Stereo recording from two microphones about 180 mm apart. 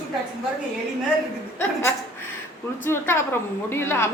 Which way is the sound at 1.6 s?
15° left (ahead or behind).